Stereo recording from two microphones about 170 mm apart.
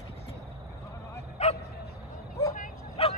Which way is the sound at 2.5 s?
50° left (ahead or behind).